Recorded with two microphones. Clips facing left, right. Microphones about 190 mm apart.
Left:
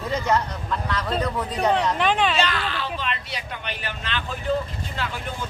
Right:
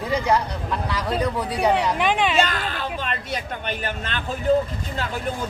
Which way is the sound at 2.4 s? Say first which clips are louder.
Right 2 dB; 45° right (ahead or behind).